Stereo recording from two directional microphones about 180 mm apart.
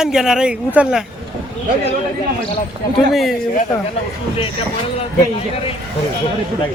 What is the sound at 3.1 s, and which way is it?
Speech, centre (ahead or behind).